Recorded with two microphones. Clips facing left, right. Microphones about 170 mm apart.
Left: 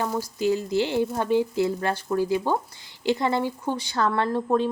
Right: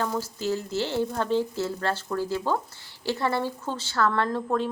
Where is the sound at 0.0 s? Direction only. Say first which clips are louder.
Left 3 dB; 15° left (ahead or behind).